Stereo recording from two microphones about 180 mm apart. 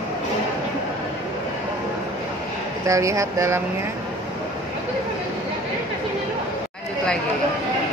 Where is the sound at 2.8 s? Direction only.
15° right (ahead or behind).